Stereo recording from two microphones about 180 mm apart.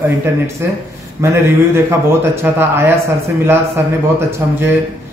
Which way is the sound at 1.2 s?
15° right (ahead or behind).